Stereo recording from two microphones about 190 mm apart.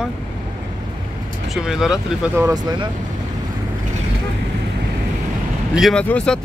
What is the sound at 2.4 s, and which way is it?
Speech, 20° right (ahead or behind).